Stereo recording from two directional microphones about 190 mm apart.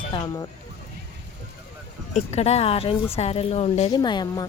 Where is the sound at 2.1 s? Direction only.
35° left (ahead or behind).